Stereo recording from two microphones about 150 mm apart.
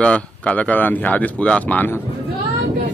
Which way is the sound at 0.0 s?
10° left (ahead or behind).